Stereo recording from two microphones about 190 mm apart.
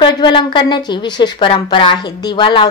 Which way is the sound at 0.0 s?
25° left (ahead or behind).